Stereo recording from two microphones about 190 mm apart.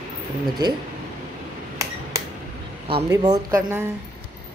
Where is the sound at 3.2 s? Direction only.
20° right (ahead or behind).